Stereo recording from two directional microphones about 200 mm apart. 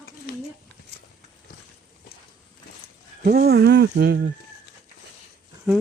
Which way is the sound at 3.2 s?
50° right (ahead or behind).